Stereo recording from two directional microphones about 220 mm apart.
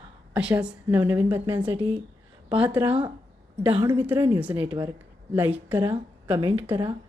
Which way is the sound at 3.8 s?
10° right (ahead or behind).